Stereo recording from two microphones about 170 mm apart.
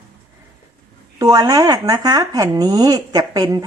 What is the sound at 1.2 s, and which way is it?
Speech, 25° right (ahead or behind).